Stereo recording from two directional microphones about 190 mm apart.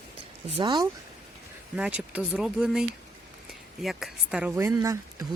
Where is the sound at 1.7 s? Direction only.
5° right (ahead or behind).